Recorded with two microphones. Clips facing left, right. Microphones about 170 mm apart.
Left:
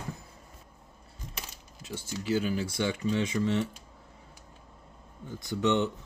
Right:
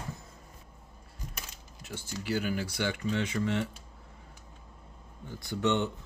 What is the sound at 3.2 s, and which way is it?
Speech, 60° right (ahead or behind).